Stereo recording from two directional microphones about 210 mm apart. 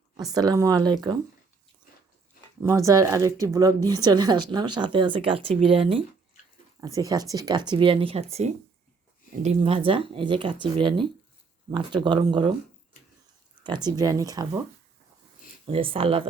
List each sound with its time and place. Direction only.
0.3 s speech: 15° right (ahead or behind)
2.6 s speech: 15° right (ahead or behind)
7.1 s speech: 15° right (ahead or behind)
13.7 s speech: 20° right (ahead or behind)
15.6 s speech: 25° right (ahead or behind)